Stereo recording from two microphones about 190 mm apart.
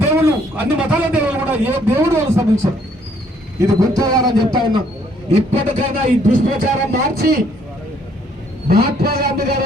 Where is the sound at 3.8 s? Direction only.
20° right (ahead or behind).